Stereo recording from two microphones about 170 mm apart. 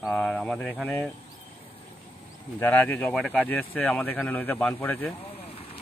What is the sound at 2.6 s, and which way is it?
Speech, 10° left (ahead or behind).